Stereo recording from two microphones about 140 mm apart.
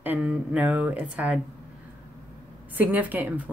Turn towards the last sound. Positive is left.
turn(degrees=-10)  # may be behind; listen again after turning